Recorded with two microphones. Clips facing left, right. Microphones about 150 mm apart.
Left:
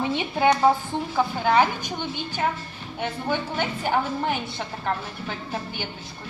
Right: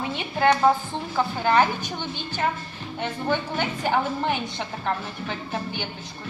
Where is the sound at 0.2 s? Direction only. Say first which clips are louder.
Right 1 dB; 15° left (ahead or behind).